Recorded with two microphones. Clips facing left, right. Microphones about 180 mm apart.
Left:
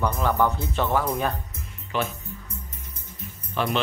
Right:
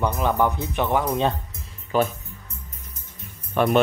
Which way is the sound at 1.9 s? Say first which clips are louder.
Right 6 dB; 40° right (ahead or behind).